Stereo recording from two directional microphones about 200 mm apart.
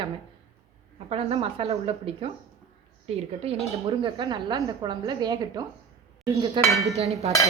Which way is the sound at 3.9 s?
25° right (ahead or behind).